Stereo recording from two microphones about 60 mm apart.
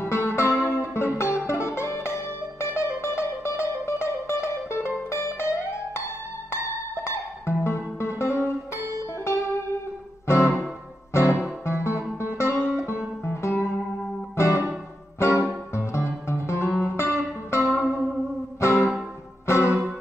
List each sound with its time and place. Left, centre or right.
0.0 s music: left
14.3 s music: left